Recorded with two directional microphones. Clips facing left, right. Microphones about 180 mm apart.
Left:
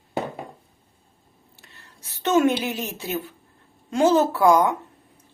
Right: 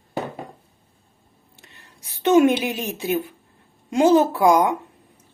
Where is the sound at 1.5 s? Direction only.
20° right (ahead or behind).